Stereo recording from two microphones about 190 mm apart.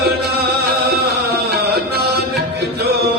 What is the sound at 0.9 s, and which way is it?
Music, 55° right (ahead or behind).